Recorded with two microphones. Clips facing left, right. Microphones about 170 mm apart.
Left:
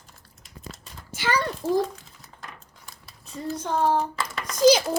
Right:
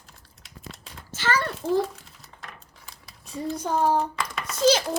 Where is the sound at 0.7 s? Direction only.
10° left (ahead or behind).